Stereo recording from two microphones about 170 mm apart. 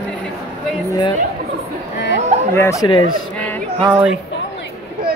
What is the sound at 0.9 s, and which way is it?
Speech, 25° left (ahead or behind).